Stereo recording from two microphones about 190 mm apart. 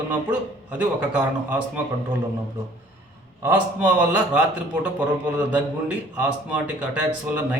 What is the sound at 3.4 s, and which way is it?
A man's voice, 10° right (ahead or behind).